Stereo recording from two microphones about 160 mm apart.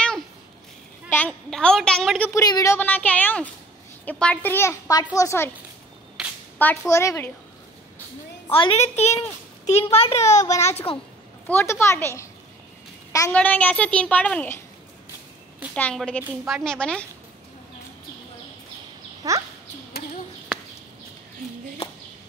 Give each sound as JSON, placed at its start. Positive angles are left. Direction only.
{"t": 1.1, "sound": "a woman's voice", "side_deg": 10}
{"t": 2.4, "sound": "a child's voice", "side_deg": 20}
{"t": 6.2, "sound": "a sound", "side_deg": -5}
{"t": 6.9, "sound": "speech", "side_deg": 20}
{"t": 8.5, "sound": "a woman's voice", "side_deg": 35}
{"t": 10.3, "sound": "a child's voice", "side_deg": 20}
{"t": 10.6, "sound": "a child's voice", "side_deg": 40}
{"t": 11.4, "sound": "speech", "side_deg": 15}
{"t": 13.3, "sound": "speech", "side_deg": 10}
{"t": 15.7, "sound": "speech", "side_deg": 5}
{"t": 16.3, "sound": "a woman's voice", "side_deg": -5}
{"t": 16.6, "sound": "speech", "side_deg": 5}
{"t": 19.2, "sound": "speech", "side_deg": -20}